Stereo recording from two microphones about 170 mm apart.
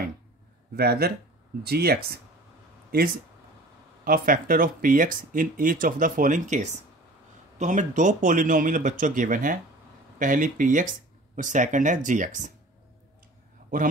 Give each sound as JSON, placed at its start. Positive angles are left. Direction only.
{"t": 0.7, "sound": "speech", "side_deg": -65}
{"t": 4.0, "sound": "speech", "side_deg": -55}